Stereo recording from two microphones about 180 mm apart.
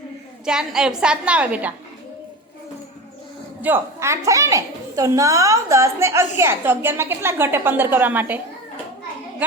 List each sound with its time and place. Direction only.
0.4 s a woman's voice: 5° right (ahead or behind)
3.6 s a woman's voice: 15° right (ahead or behind)